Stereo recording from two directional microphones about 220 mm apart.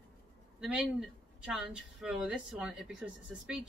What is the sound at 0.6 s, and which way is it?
Speech, centre (ahead or behind).